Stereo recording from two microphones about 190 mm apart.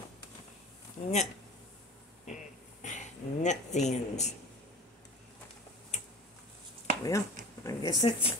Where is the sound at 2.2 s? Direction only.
40° left (ahead or behind).